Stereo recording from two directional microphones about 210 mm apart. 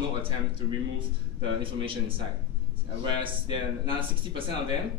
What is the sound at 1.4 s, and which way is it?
A man's voice, 25° right (ahead or behind).